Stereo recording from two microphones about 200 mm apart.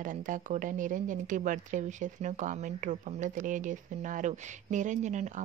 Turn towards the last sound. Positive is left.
turn(degrees=-35)  # may be behind; listen again after turning